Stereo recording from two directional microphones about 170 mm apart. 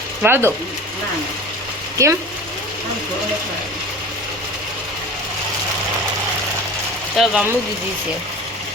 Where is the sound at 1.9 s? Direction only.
15° right (ahead or behind).